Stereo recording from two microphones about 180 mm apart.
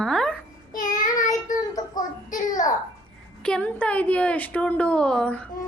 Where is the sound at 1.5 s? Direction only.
45° left (ahead or behind).